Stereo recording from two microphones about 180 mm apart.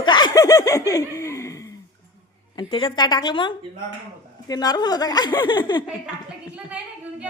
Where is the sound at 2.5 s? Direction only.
30° left (ahead or behind).